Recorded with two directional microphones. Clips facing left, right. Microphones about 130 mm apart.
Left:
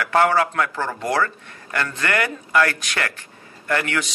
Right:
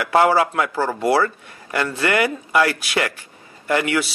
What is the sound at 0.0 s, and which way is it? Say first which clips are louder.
A man's voice: right 2 dB; 15° right (ahead or behind).